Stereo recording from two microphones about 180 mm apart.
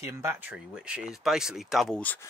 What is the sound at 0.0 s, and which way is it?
Speech, 15° right (ahead or behind).